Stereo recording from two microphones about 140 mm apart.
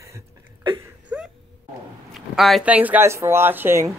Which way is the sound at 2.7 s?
10° right (ahead or behind).